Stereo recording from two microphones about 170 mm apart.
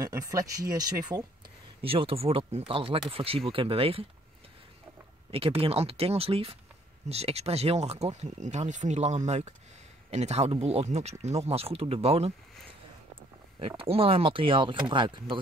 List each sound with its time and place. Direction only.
0.0 s speech: 20° right (ahead or behind)
1.8 s speech: 35° right (ahead or behind)
5.3 s speech: 35° right (ahead or behind)
13.6 s speech: 35° right (ahead or behind)